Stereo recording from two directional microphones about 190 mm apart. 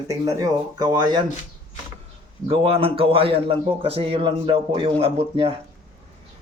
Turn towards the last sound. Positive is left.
turn(degrees=-30)  # may be behind; listen again after turning